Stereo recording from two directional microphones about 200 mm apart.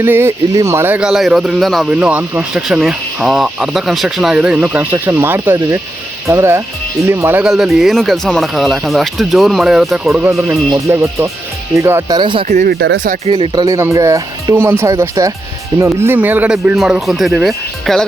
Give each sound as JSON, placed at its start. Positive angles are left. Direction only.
{"t": 0.0, "sound": "speech", "side_deg": -10}
{"t": 10.5, "sound": "speech", "side_deg": -15}
{"t": 12.5, "sound": "speech", "side_deg": -40}
{"t": 13.2, "sound": "speech", "side_deg": -25}